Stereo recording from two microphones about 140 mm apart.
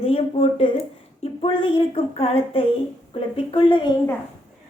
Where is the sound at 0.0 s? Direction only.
45° left (ahead or behind).